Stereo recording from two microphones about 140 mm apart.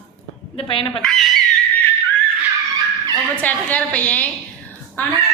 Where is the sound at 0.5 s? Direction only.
40° left (ahead or behind).